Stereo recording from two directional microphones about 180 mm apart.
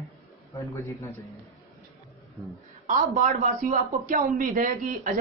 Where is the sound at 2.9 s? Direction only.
45° right (ahead or behind).